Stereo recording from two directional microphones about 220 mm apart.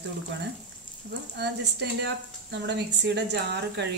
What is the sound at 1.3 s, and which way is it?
A woman's voice, 50° right (ahead or behind).